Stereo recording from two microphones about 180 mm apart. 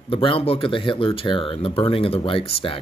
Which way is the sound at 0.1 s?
30° left (ahead or behind).